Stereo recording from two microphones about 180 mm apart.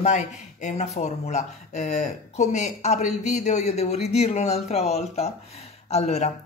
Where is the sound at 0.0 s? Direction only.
40° left (ahead or behind).